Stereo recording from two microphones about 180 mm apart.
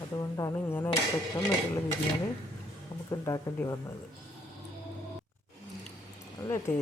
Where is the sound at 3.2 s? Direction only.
20° left (ahead or behind).